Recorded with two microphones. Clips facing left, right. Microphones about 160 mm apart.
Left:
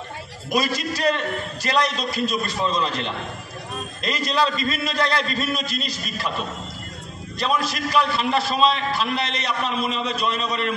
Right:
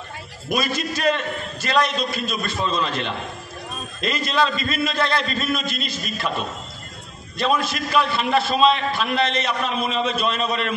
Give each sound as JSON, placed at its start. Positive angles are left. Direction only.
{"t": 0.5, "sound": "a man's voice", "side_deg": 35}
{"t": 7.3, "sound": "a man's voice", "side_deg": 35}